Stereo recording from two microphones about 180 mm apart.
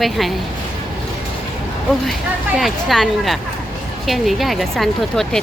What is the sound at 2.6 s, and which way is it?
Speech, centre (ahead or behind).